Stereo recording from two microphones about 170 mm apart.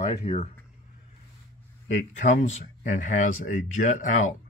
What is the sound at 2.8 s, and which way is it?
Speech, 50° left (ahead or behind).